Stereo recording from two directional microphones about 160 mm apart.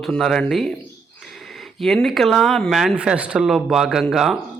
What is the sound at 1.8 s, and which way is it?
A man's voice, centre (ahead or behind).